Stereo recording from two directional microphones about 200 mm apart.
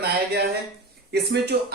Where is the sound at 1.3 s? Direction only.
55° right (ahead or behind).